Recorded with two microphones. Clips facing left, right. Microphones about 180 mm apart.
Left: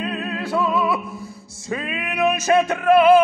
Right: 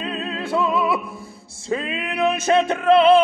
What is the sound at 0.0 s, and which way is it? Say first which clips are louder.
Music: left 1 dB; 25° right (ahead or behind).